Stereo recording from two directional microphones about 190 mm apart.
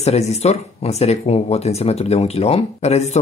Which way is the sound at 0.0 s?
35° left (ahead or behind).